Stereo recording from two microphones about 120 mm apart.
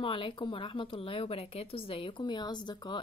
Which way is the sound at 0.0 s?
45° left (ahead or behind).